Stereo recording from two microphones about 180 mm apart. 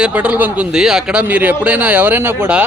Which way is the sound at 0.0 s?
5° right (ahead or behind).